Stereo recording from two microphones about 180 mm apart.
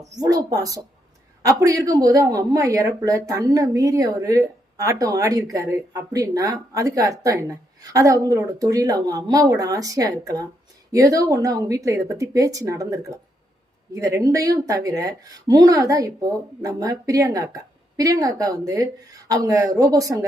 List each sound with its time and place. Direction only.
0.2 s a woman's voice: 20° right (ahead or behind)